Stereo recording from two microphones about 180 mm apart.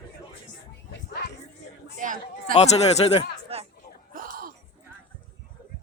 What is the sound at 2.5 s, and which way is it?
Speech, 35° left (ahead or behind).